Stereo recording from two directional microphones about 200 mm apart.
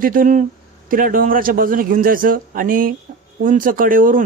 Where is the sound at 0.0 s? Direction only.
45° right (ahead or behind).